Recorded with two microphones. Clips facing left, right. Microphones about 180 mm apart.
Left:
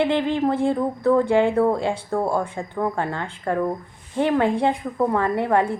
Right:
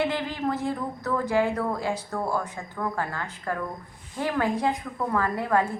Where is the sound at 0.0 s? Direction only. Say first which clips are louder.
Left 7 dB; 25° left (ahead or behind).